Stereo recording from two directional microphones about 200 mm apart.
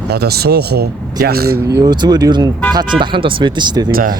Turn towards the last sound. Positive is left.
turn(degrees=-20)  # may be behind; listen again after turning